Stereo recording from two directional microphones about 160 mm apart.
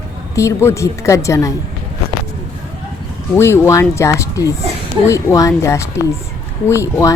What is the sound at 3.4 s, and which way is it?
Speech, 15° left (ahead or behind).